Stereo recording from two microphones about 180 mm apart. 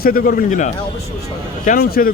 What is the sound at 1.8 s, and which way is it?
Speech, 50° left (ahead or behind).